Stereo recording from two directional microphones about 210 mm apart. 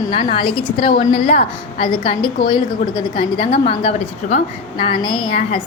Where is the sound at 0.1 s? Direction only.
25° left (ahead or behind).